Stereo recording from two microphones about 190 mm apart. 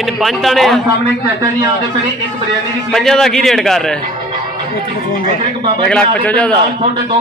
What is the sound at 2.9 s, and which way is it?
A man's voice, centre (ahead or behind).